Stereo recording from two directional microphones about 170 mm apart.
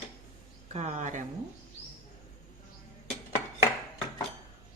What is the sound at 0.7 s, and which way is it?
Speech, 45° right (ahead or behind).